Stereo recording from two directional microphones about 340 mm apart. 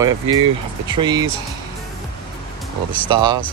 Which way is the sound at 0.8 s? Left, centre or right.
Centre.